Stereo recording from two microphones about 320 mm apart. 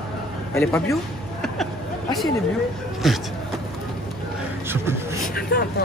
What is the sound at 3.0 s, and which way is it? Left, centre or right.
Speech, centre.